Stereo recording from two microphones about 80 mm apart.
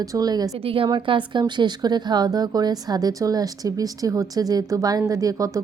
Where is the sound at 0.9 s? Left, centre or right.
Right.